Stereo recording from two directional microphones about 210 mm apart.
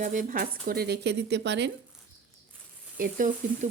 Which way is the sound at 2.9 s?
40° right (ahead or behind).